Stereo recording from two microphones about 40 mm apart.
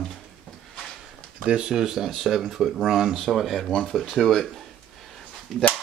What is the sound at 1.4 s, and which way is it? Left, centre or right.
Speech, right.